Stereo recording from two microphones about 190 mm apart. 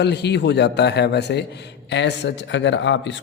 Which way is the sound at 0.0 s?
60° left (ahead or behind).